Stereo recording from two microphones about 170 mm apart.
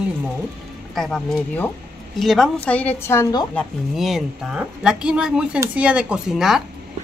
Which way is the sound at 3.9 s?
Centre (ahead or behind).